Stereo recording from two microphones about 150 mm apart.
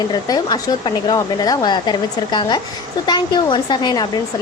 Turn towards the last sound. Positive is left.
turn(degrees=30)  # may be behind; listen again after turning